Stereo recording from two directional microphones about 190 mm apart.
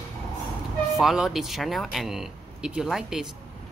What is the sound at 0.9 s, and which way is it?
Speech, centre (ahead or behind).